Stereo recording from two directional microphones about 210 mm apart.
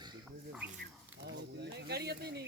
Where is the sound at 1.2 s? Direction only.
55° right (ahead or behind).